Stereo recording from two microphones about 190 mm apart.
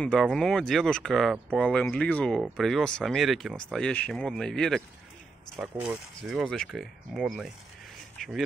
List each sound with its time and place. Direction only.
0.0 s speech: 5° left (ahead or behind)